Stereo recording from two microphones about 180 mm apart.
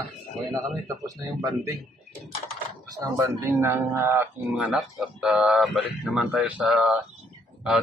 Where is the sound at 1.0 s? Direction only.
20° right (ahead or behind).